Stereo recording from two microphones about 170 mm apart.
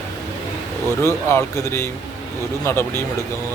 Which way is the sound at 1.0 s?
15° left (ahead or behind).